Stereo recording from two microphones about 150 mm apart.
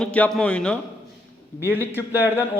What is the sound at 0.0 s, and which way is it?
Speech, 5° left (ahead or behind).